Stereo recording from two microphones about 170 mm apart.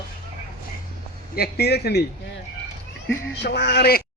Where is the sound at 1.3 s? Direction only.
65° left (ahead or behind).